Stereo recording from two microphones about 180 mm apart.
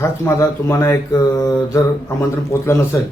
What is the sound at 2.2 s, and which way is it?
Speech, 15° left (ahead or behind).